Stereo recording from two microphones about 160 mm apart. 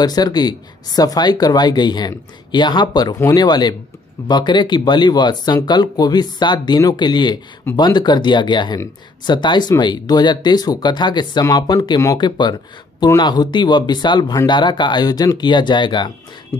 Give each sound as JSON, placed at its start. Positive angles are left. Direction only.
{"t": 0.0, "sound": "speech", "side_deg": 25}